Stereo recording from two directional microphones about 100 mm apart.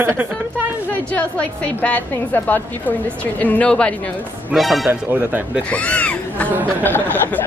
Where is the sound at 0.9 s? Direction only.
15° left (ahead or behind).